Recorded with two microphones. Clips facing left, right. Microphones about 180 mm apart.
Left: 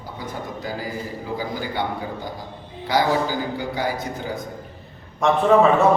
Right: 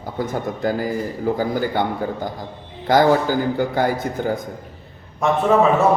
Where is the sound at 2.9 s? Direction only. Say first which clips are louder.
Right 5 dB; 50° right (ahead or behind).